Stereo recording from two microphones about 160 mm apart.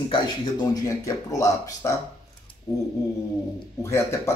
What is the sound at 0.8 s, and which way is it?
Speech, 20° left (ahead or behind).